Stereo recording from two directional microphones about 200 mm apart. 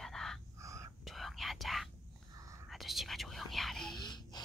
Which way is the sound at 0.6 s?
15° right (ahead or behind).